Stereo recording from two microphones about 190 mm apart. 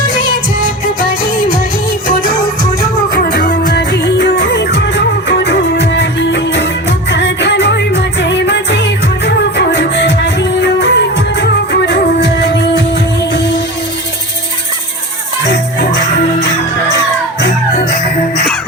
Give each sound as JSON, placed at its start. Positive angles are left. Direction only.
{"t": 2.0, "sound": "music", "side_deg": -50}
{"t": 3.8, "sound": "music", "side_deg": 65}